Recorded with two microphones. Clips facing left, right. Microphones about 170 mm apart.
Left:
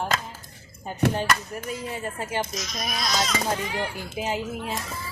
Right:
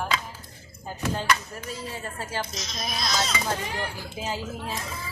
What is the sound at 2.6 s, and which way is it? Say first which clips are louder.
Speech: left 2 dB; 25° right (ahead or behind).